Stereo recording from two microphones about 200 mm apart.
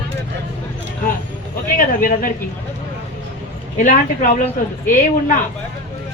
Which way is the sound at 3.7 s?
40° left (ahead or behind).